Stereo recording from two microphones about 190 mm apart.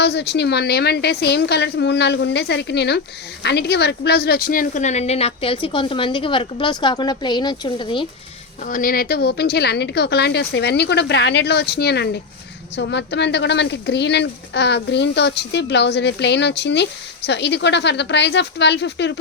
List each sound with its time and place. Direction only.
0.0 s a woman's voice: 60° left (ahead or behind); by 8.0 s 25° left (ahead or behind)
8.6 s speech: 45° left (ahead or behind); by 19.2 s 65° left (ahead or behind)